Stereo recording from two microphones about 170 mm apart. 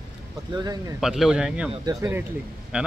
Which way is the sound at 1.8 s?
20° right (ahead or behind).